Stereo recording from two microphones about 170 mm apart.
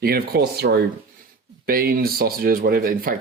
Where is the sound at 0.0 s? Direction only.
65° right (ahead or behind).